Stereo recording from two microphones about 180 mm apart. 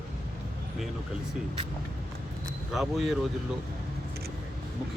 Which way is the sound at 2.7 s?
Centre (ahead or behind).